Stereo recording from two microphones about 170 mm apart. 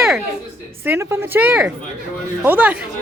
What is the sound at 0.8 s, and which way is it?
Speech, 15° right (ahead or behind).